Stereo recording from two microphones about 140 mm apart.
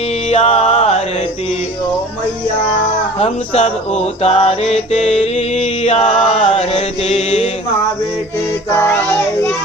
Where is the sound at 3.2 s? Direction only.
50° left (ahead or behind).